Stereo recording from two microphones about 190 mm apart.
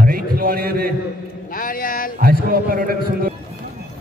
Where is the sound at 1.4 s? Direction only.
45° left (ahead or behind).